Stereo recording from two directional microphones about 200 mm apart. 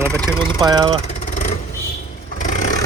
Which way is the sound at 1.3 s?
40° left (ahead or behind).